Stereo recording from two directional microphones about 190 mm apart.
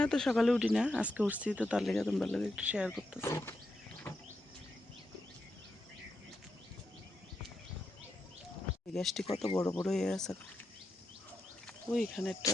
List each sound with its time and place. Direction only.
0.0 s speech: 5° left (ahead or behind)
3.2 s speech: 10° left (ahead or behind)
9.0 s speech: centre (ahead or behind)
9.2 s speech: 25° left (ahead or behind)
9.7 s speech: 5° left (ahead or behind)
11.6 s speech: 5° left (ahead or behind)